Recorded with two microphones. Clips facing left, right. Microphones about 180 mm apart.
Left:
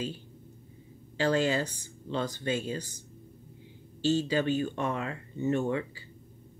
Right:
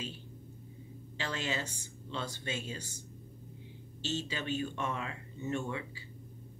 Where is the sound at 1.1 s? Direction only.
40° left (ahead or behind).